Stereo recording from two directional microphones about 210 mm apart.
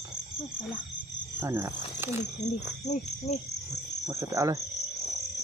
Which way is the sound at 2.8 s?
35° left (ahead or behind).